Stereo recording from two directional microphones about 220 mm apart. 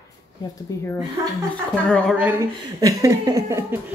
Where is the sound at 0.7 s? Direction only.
15° left (ahead or behind).